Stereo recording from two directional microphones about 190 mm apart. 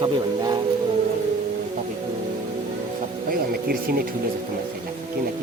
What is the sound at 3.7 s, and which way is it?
Speech, 55° right (ahead or behind).